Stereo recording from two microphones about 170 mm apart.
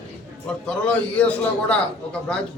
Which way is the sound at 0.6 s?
5° left (ahead or behind).